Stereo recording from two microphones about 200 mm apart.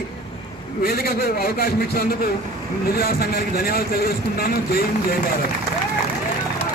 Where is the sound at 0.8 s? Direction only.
50° left (ahead or behind).